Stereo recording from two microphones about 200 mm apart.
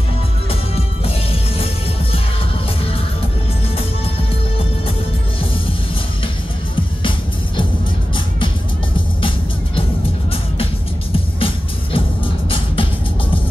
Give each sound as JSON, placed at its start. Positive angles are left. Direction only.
{"t": 0.5, "sound": "music", "side_deg": 30}
{"t": 7.0, "sound": "music", "side_deg": 25}
{"t": 11.3, "sound": "music", "side_deg": 25}